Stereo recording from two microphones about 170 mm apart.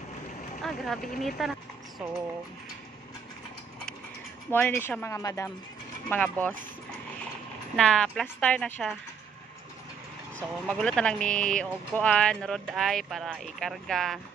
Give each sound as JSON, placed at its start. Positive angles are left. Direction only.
{"t": 0.6, "sound": "speech", "side_deg": 0}
{"t": 4.5, "sound": "speech", "side_deg": 10}
{"t": 7.7, "sound": "speech", "side_deg": 5}
{"t": 10.7, "sound": "speech", "side_deg": 5}